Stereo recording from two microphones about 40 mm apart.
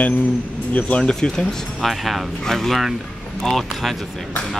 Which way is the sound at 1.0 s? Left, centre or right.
Centre.